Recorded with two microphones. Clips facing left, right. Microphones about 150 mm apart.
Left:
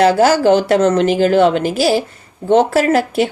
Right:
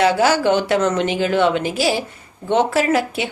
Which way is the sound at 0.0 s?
40° left (ahead or behind).